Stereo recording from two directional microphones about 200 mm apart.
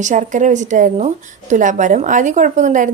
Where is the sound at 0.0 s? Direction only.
40° right (ahead or behind).